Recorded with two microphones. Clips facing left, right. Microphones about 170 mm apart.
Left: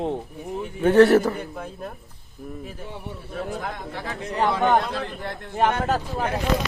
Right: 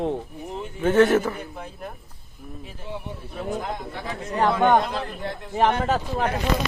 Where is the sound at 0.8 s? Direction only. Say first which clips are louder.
Left 3 dB; 35° left (ahead or behind).